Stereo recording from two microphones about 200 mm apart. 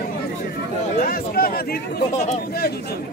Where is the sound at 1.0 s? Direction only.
45° left (ahead or behind).